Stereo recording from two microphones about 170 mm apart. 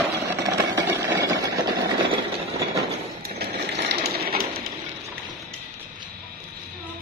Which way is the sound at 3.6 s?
90° right.